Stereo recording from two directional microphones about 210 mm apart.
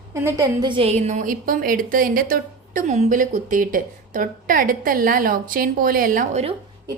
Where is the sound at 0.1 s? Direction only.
15° right (ahead or behind); by 6.5 s 35° right (ahead or behind).